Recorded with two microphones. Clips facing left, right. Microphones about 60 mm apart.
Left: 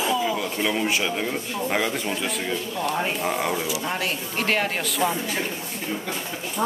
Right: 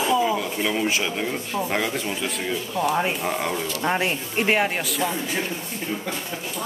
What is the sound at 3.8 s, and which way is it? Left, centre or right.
Speech, right.